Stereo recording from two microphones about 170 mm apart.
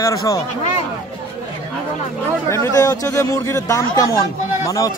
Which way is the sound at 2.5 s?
20° left (ahead or behind).